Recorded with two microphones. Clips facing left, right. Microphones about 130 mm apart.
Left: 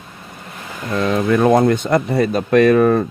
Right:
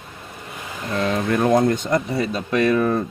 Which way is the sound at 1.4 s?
85° left.